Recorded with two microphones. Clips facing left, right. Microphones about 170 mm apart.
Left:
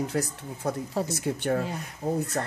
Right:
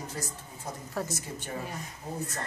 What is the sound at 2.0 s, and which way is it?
Speech, 60° left (ahead or behind).